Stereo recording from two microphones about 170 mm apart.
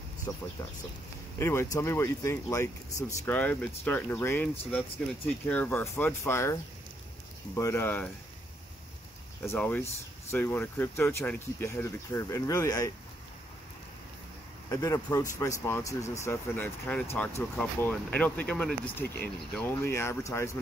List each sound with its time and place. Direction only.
0.3 s speech: 20° left (ahead or behind)
9.5 s speech: 10° left (ahead or behind)
14.7 s speech: 20° left (ahead or behind)